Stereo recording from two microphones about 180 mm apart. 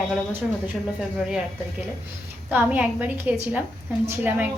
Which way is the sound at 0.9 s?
5° right (ahead or behind).